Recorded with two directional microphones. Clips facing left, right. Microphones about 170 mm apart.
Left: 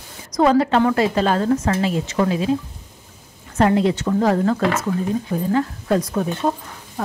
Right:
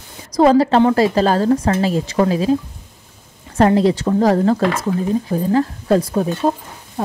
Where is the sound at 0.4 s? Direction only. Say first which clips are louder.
Right 4 dB; 35° right (ahead or behind).